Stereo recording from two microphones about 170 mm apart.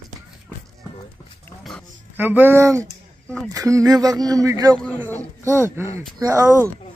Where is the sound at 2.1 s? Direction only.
10° right (ahead or behind).